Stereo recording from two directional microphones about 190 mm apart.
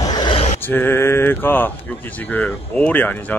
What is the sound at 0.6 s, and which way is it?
Speech, 10° left (ahead or behind).